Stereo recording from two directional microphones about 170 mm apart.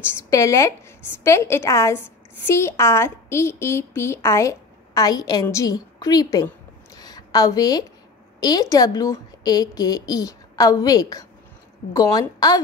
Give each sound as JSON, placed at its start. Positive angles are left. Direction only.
{"t": 0.2, "sound": "a woman's voice", "side_deg": 20}
{"t": 7.0, "sound": "a sound", "side_deg": 20}
{"t": 8.4, "sound": "a woman's voice", "side_deg": 20}